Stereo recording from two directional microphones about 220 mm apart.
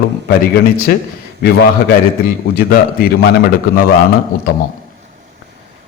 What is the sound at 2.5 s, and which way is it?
A man's voice, 45° left (ahead or behind).